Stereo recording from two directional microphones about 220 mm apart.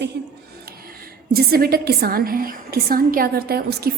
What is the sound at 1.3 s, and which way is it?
A woman's voice, 45° right (ahead or behind).